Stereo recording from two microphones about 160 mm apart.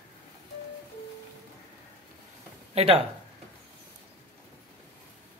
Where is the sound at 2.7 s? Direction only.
35° right (ahead or behind).